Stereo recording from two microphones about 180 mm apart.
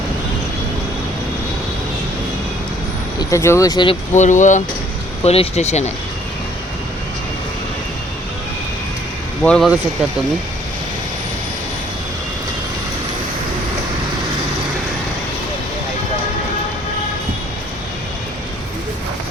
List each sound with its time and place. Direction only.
3.2 s speech: 15° left (ahead or behind)
4.1 s speech: 45° left (ahead or behind)
9.4 s speech: 5° left (ahead or behind)